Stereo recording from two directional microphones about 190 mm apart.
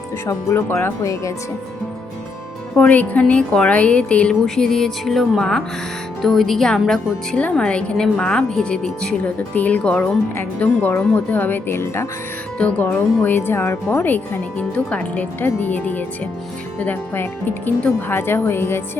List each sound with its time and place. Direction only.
0.3 s speech: 15° left (ahead or behind)
2.7 s a woman's voice: 10° left (ahead or behind)